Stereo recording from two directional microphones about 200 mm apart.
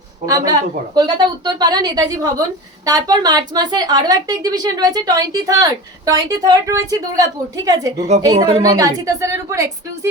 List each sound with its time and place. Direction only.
0.3 s a woman's voice: 20° right (ahead or behind)